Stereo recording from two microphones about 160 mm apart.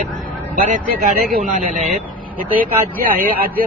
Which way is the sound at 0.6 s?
55° right (ahead or behind).